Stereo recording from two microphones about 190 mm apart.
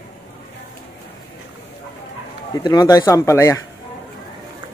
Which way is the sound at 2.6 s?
20° left (ahead or behind).